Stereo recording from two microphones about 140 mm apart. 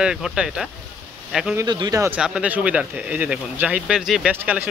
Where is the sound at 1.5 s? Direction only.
30° right (ahead or behind).